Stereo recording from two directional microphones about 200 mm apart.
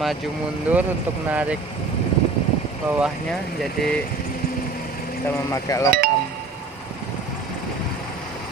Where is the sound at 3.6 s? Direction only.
Centre (ahead or behind).